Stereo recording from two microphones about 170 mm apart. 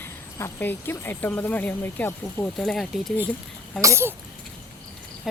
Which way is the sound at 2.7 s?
Centre (ahead or behind).